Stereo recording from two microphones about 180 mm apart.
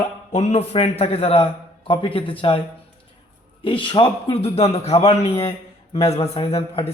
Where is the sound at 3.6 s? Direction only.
30° left (ahead or behind).